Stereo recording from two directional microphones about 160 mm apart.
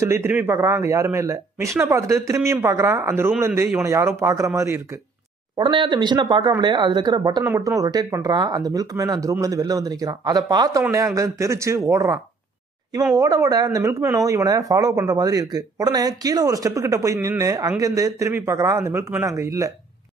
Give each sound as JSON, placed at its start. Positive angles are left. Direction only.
{"t": 0.0, "sound": "speech", "side_deg": -15}
{"t": 5.6, "sound": "speech", "side_deg": -30}